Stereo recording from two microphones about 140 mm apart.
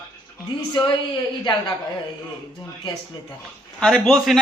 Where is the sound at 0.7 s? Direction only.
35° left (ahead or behind).